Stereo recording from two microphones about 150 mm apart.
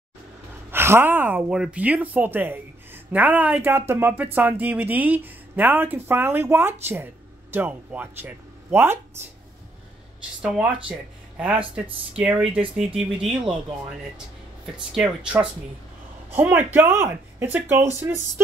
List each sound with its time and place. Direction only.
0.7 s a woman's voice: 15° right (ahead or behind)
10.4 s speech: 10° right (ahead or behind)
14.8 s speech: 5° right (ahead or behind)
16.3 s speech: 15° right (ahead or behind)